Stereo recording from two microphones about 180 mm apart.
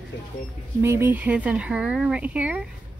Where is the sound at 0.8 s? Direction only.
10° right (ahead or behind).